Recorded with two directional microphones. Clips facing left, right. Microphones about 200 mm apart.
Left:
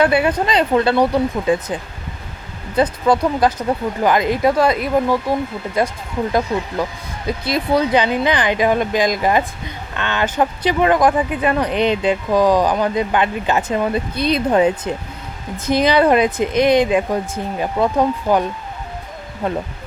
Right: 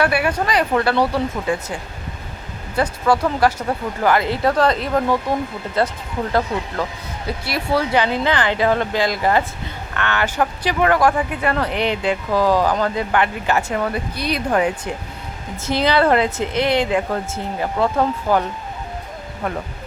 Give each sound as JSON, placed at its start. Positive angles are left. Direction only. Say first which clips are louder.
{"t": 0.0, "sound": "speech", "louder": "left 3 dB", "side_deg": 20}